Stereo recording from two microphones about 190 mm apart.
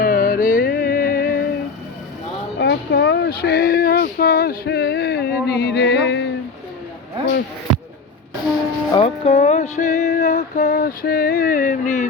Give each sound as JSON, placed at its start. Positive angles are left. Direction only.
{"t": 0.0, "sound": "music", "side_deg": 50}
{"t": 2.6, "sound": "a sound", "side_deg": 60}
{"t": 8.9, "sound": "music", "side_deg": 30}